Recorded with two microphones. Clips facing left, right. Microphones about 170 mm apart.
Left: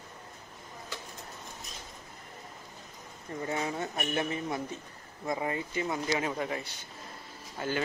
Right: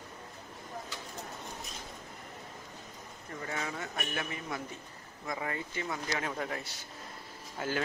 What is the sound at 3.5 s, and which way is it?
Speech, 25° left (ahead or behind).